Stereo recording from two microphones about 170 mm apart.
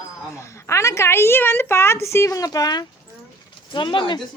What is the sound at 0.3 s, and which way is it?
A woman's voice, 15° left (ahead or behind).